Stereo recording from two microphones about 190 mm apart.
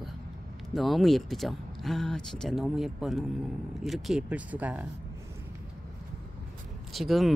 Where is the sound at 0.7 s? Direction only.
Centre (ahead or behind).